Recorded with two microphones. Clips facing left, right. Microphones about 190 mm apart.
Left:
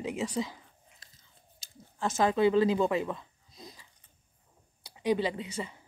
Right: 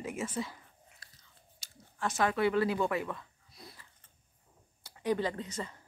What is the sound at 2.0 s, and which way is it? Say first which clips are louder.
Speech: left 4 dB; 25° left (ahead or behind).